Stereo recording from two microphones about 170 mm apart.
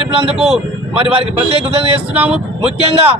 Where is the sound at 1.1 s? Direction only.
35° right (ahead or behind).